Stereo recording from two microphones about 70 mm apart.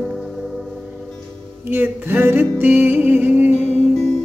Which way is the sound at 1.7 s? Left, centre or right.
Right.